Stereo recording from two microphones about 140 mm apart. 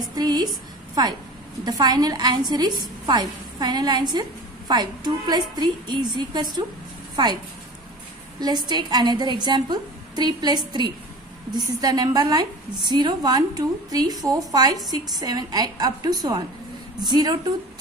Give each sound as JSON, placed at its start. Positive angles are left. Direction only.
{"t": 0.1, "sound": "a sound", "side_deg": -30}
{"t": 1.6, "sound": "a woman's voice", "side_deg": -30}
{"t": 8.6, "sound": "a woman's voice", "side_deg": -30}